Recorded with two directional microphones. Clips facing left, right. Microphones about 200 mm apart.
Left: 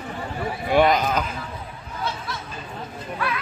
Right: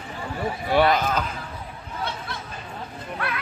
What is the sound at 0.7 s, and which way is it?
Speech, 15° left (ahead or behind).